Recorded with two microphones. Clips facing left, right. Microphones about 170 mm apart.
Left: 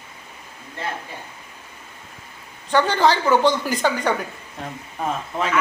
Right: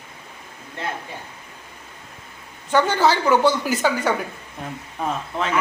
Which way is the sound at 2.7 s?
10° right (ahead or behind).